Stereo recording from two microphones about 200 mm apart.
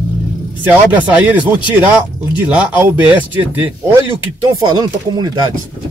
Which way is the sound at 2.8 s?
10° right (ahead or behind).